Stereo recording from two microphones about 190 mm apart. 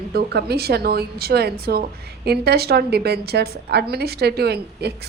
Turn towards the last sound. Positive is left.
turn(degrees=-55)  # may be behind; listen again after turning